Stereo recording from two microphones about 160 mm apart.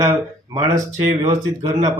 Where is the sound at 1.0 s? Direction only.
20° right (ahead or behind).